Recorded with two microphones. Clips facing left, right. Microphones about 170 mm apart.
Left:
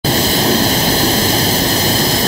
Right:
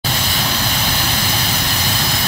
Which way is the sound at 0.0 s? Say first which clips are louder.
Left 9 dB; 40° left (ahead or behind).